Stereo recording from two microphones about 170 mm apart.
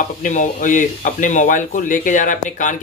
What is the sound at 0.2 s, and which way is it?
Speech, 50° left (ahead or behind).